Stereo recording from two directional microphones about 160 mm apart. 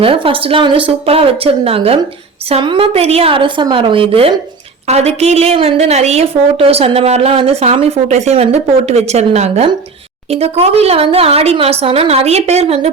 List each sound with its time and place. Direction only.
0.0 s a woman's voice: 35° right (ahead or behind)